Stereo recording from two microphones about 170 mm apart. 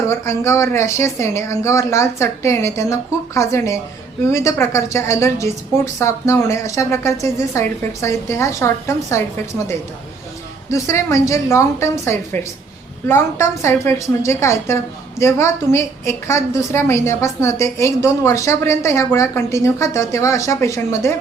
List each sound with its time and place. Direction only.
0.1 s a woman's voice: 15° left (ahead or behind)
10.7 s a woman's voice: 20° left (ahead or behind)